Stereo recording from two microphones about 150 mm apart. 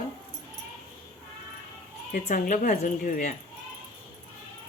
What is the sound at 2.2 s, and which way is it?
Speech, 60° left (ahead or behind).